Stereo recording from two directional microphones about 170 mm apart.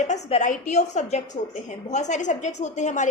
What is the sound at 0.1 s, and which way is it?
A woman's voice, 40° left (ahead or behind).